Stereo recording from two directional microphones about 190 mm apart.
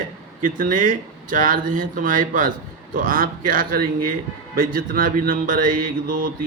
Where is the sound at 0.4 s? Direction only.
45° right (ahead or behind).